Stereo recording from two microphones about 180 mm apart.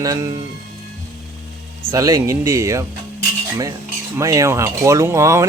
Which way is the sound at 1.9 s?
20° right (ahead or behind).